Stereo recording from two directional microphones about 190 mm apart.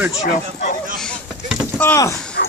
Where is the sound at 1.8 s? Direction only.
15° left (ahead or behind).